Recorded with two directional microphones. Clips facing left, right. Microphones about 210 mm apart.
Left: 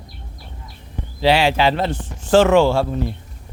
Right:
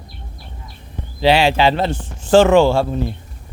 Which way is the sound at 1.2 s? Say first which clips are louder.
Right 2 dB; 25° right (ahead or behind).